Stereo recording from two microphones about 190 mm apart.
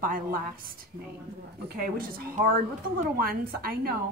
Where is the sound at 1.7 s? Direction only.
50° right (ahead or behind).